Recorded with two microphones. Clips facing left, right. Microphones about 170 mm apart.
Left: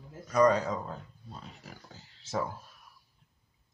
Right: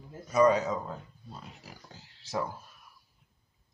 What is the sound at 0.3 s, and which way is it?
Speech, 5° right (ahead or behind).